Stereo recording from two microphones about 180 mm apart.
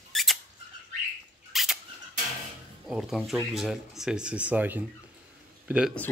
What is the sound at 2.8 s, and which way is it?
Speech, centre (ahead or behind).